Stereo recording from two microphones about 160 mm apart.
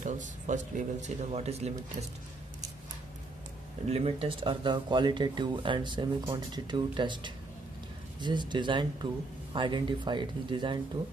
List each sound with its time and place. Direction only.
0.0 s speech: 50° right (ahead or behind)
3.8 s speech: 40° right (ahead or behind)